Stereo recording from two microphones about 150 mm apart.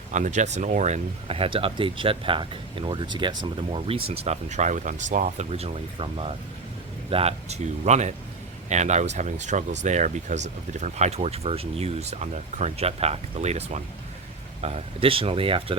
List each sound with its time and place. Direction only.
0.1 s speech: 50° right (ahead or behind); by 15.8 s 35° right (ahead or behind)